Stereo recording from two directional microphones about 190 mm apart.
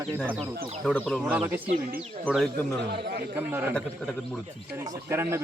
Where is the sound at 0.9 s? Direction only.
5° left (ahead or behind).